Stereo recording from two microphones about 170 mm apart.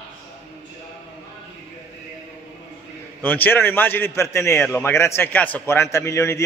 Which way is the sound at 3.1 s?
10° left (ahead or behind).